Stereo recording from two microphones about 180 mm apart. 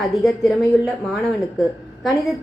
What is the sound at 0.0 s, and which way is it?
Speech, centre (ahead or behind).